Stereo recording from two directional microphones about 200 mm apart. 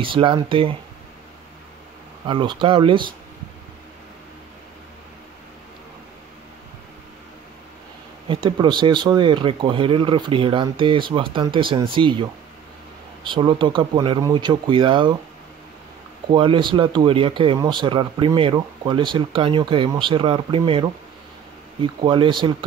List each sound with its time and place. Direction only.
0.0 s speech: 25° right (ahead or behind)
2.2 s speech: 25° right (ahead or behind)
8.3 s speech: 25° right (ahead or behind)
16.3 s speech: 25° right (ahead or behind)